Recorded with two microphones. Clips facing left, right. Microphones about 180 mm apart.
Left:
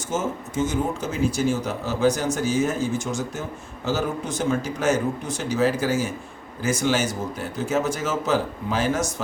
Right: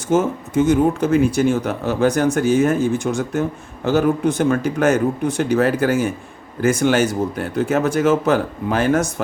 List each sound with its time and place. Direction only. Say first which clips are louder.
0.1 s speech: right 9 dB; 60° right (ahead or behind)